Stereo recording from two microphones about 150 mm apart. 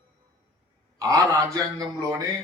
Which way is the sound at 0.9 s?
25° right (ahead or behind).